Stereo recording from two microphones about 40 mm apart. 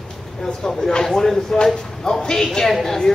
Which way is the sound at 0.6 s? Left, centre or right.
Centre.